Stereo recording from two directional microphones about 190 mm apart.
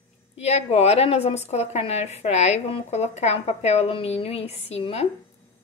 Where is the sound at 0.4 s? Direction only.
35° left (ahead or behind).